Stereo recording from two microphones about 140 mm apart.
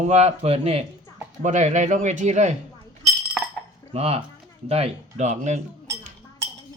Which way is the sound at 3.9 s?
45° right (ahead or behind).